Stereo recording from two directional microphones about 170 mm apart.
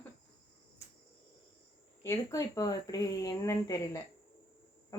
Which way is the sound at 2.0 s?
20° left (ahead or behind).